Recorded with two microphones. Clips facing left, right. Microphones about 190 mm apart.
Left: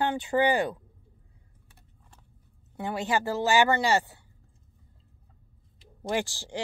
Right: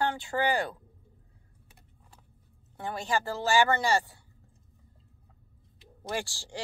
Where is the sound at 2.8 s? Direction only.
20° left (ahead or behind).